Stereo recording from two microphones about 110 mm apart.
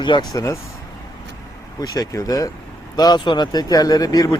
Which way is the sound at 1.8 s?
35° left (ahead or behind).